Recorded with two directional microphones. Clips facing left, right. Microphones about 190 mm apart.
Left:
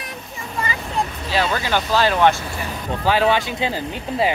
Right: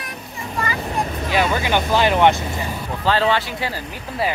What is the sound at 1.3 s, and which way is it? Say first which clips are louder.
Speech: right 2 dB; 15° right (ahead or behind).